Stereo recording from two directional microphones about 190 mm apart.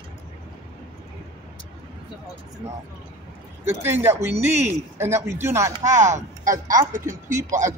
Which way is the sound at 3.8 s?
10° right (ahead or behind).